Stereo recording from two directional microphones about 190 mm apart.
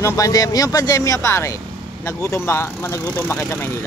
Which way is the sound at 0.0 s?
15° left (ahead or behind).